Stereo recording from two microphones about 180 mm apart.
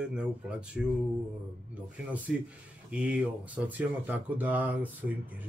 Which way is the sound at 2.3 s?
Centre (ahead or behind).